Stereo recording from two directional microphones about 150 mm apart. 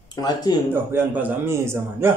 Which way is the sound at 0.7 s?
15° right (ahead or behind).